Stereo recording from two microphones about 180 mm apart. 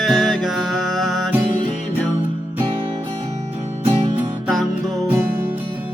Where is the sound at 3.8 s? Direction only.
30° right (ahead or behind).